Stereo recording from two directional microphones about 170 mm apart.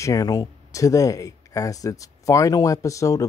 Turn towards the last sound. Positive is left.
turn(degrees=20)  # may be behind; listen again after turning